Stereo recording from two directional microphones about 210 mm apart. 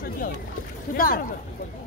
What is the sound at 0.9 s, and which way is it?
Speech, 45° left (ahead or behind).